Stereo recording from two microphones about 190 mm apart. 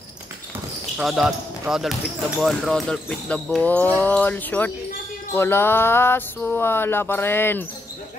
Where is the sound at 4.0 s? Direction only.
10° left (ahead or behind).